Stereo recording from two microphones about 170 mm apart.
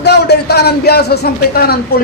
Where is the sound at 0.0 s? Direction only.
75° left (ahead or behind).